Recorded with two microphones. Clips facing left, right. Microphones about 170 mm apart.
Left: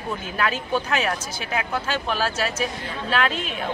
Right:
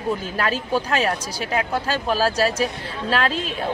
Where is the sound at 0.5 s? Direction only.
35° right (ahead or behind).